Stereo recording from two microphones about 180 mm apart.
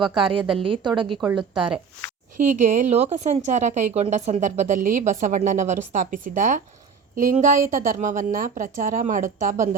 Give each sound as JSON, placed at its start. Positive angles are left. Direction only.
{"t": 0.6, "sound": "a woman's voice", "side_deg": -25}
{"t": 1.2, "sound": "a woman's voice", "side_deg": -5}
{"t": 2.4, "sound": "a woman's voice", "side_deg": -45}